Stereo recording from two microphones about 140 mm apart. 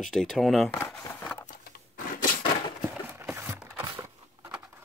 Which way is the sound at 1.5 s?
85° left.